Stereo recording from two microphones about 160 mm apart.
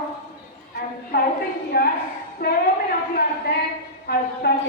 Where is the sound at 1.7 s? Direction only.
80° left.